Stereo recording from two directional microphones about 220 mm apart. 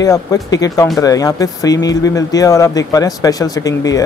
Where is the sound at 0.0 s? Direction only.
15° left (ahead or behind).